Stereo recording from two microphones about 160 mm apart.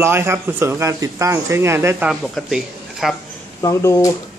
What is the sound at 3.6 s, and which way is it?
Speech, 20° left (ahead or behind).